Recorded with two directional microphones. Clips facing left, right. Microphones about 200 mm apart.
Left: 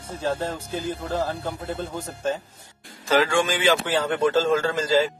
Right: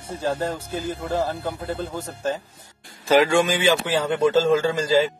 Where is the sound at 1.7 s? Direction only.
5° right (ahead or behind).